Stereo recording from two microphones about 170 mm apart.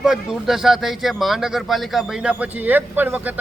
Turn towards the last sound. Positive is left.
turn(degrees=-10)  # may be behind; listen again after turning